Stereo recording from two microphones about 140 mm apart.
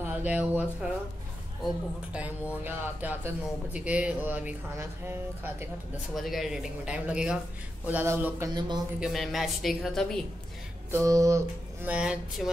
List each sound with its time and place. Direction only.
0.0 s speech: 10° right (ahead or behind)
6.1 s speech: centre (ahead or behind); by 8.5 s 15° right (ahead or behind)
8.5 s speech: 30° right (ahead or behind)
9.0 s speech: centre (ahead or behind)
10.9 s speech: 20° right (ahead or behind)
11.9 s speech: 5° right (ahead or behind)